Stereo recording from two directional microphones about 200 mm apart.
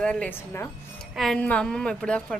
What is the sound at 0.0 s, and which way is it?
A woman's voice, 5° left (ahead or behind).